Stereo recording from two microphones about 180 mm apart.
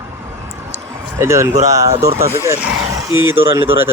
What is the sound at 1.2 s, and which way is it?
Speech, 15° right (ahead or behind).